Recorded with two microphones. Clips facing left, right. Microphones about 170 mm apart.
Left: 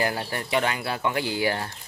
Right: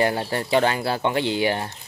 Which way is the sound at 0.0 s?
25° right (ahead or behind).